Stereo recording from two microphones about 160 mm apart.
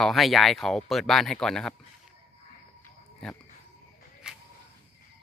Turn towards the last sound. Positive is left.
turn(degrees=-5)  # may be behind; listen again after turning